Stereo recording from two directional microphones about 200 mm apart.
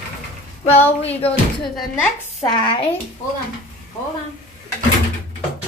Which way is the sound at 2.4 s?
25° left (ahead or behind).